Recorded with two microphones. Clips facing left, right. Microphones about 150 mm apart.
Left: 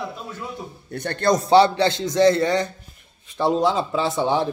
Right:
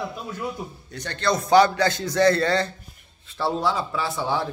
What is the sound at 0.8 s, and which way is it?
Speech, 55° left (ahead or behind).